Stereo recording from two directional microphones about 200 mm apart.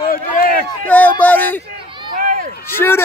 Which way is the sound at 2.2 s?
40° right (ahead or behind).